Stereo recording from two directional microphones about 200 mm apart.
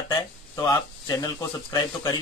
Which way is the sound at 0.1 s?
20° left (ahead or behind).